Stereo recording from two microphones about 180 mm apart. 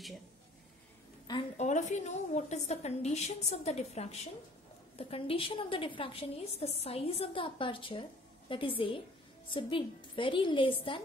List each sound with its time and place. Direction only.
1.6 s a woman's voice: 40° left (ahead or behind)